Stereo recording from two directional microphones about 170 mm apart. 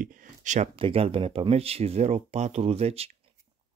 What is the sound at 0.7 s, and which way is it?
Speech, 35° right (ahead or behind).